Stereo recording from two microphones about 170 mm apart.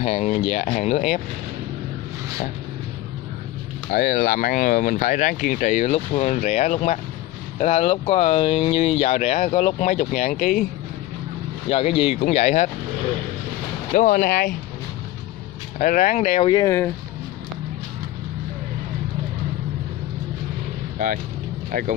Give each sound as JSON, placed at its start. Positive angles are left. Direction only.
{"t": 0.0, "sound": "speech", "side_deg": 45}
{"t": 3.9, "sound": "speech", "side_deg": 60}
{"t": 11.7, "sound": "speech", "side_deg": 35}
{"t": 13.9, "sound": "speech", "side_deg": 55}
{"t": 15.8, "sound": "speech", "side_deg": 50}
{"t": 16.5, "sound": "speech", "side_deg": 15}
{"t": 21.0, "sound": "speech", "side_deg": -50}